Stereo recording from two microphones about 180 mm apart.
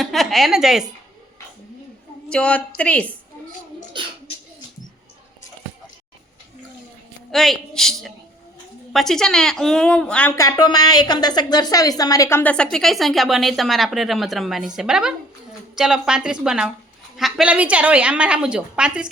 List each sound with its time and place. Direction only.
0.0 s a woman's voice: centre (ahead or behind)
2.3 s a woman's voice: 5° left (ahead or behind)
7.3 s a woman's voice: centre (ahead or behind)